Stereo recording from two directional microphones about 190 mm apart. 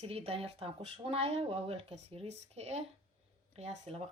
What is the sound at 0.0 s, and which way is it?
Speech, 30° right (ahead or behind).